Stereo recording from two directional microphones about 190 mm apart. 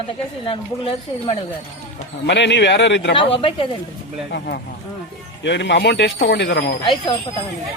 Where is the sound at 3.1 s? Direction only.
30° left (ahead or behind).